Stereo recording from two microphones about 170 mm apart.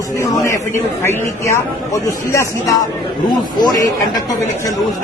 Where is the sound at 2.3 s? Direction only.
15° left (ahead or behind).